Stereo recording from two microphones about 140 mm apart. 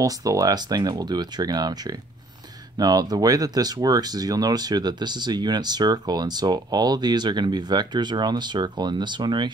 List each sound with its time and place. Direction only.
0.0 s speech: 25° right (ahead or behind)